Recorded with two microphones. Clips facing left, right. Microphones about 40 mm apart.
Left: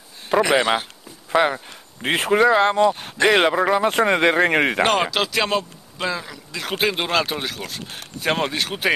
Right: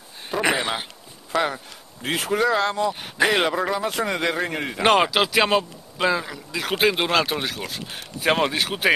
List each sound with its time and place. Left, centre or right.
0.3 s a sound: left
1.3 s speech: left
2.4 s a man's voice: left
2.7 s speech: left
3.3 s a man's voice: centre
3.7 s speech: left
4.5 s speech: left
5.0 s speech: centre